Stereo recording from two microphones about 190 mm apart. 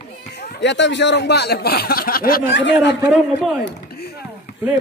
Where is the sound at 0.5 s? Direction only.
70° left (ahead or behind).